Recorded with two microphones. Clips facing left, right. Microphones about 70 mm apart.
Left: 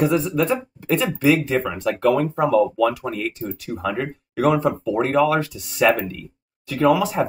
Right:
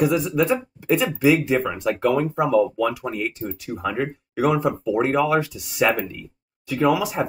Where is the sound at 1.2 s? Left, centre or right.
Centre.